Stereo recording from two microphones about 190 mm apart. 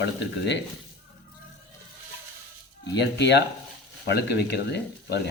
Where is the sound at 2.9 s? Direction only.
60° left (ahead or behind).